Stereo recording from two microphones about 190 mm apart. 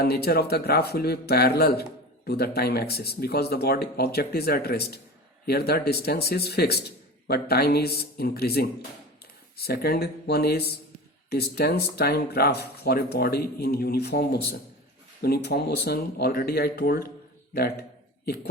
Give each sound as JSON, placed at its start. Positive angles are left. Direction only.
{"t": 0.0, "sound": "speech", "side_deg": 55}